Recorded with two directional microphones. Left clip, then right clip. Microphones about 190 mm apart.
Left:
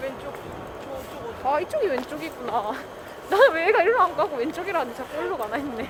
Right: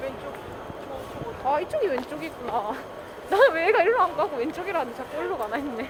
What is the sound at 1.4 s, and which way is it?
Speech, 5° left (ahead or behind).